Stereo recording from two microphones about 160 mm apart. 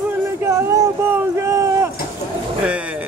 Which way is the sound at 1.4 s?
20° right (ahead or behind).